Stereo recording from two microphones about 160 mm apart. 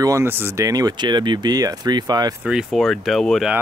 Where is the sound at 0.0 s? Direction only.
15° right (ahead or behind).